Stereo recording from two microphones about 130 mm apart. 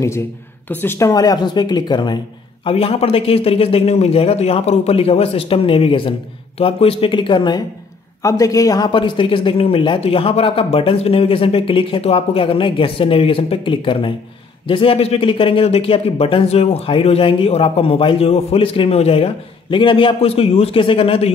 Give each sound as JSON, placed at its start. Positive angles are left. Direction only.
{"t": 0.7, "sound": "speech", "side_deg": 15}
{"t": 2.6, "sound": "speech", "side_deg": 45}
{"t": 8.2, "sound": "speech", "side_deg": 25}